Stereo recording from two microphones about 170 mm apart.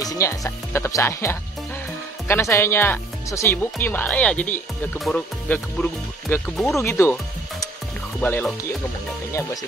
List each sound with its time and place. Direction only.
0.0 s speech: 20° left (ahead or behind)
8.2 s speech: 10° left (ahead or behind)